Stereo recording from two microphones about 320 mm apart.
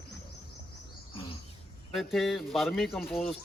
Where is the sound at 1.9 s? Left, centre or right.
Centre.